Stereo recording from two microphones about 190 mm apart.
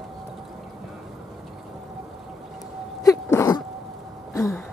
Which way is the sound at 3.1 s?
15° left (ahead or behind).